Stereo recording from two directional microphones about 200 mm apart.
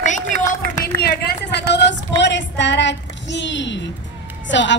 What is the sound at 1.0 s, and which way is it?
A woman's voice, 50° left (ahead or behind).